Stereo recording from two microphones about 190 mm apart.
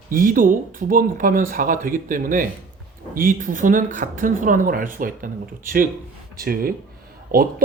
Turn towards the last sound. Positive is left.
turn(degrees=-50)  # may be behind; listen again after turning